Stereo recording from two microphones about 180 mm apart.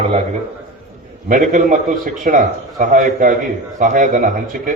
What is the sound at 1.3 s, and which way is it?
A man's voice, 45° right (ahead or behind).